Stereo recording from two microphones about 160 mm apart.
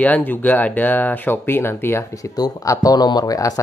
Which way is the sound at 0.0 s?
10° left (ahead or behind).